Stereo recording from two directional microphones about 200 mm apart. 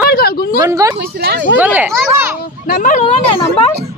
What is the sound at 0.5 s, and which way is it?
Speech, 15° right (ahead or behind).